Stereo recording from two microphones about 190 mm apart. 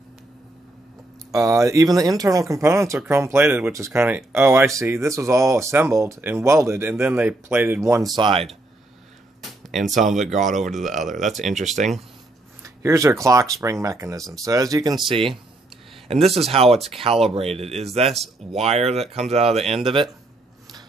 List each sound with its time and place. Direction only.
1.3 s speech: 15° right (ahead or behind)
9.4 s music: centre (ahead or behind)
9.9 s speech: 40° right (ahead or behind)
10.2 s speech: centre (ahead or behind)
11.1 s speech: 40° right (ahead or behind)
11.3 s speech: centre (ahead or behind)
12.6 s speech: 15° right (ahead or behind)